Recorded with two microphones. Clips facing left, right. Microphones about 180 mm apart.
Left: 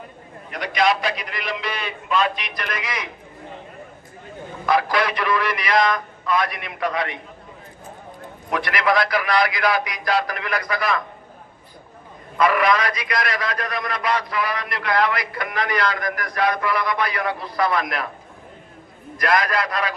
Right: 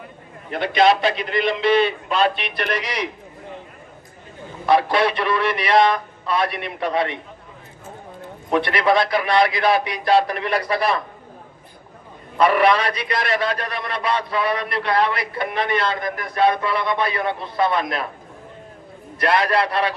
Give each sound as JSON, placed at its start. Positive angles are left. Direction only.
{"t": 0.5, "sound": "a man's voice", "side_deg": -30}
{"t": 4.6, "sound": "a man's voice", "side_deg": -30}
{"t": 8.5, "sound": "a man's voice", "side_deg": -30}
{"t": 12.4, "sound": "a man's voice", "side_deg": -30}
{"t": 19.1, "sound": "a man's voice", "side_deg": -30}